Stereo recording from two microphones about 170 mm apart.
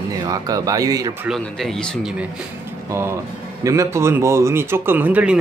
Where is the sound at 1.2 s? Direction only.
Centre (ahead or behind).